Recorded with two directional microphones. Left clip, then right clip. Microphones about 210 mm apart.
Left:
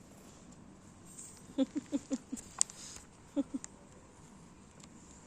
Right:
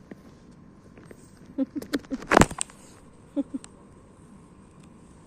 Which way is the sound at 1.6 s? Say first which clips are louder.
Right 4 dB; 30° left (ahead or behind).